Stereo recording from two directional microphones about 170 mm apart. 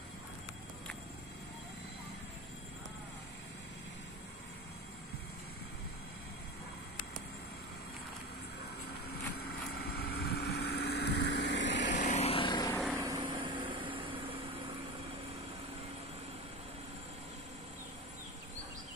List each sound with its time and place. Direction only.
9.5 s vehicle: 65° left (ahead or behind); by 11.9 s 90° left
11.9 s vehicle: 45° left (ahead or behind); by 12.7 s 25° left (ahead or behind)
12.9 s vehicle: 20° right (ahead or behind)